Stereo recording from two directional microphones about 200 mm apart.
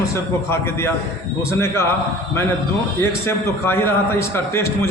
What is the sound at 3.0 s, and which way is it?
A man's voice, 15° left (ahead or behind).